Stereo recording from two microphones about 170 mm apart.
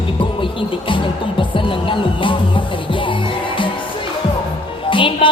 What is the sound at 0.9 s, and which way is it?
Music, 30° left (ahead or behind).